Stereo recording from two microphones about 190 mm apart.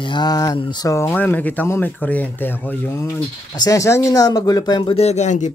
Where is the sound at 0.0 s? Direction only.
25° left (ahead or behind).